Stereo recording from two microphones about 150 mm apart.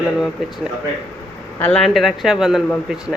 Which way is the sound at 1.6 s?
5° left (ahead or behind).